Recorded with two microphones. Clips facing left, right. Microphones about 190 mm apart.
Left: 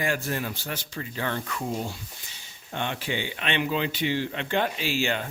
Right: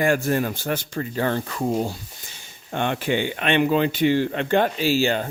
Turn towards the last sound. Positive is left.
turn(degrees=-35)  # may be behind; listen again after turning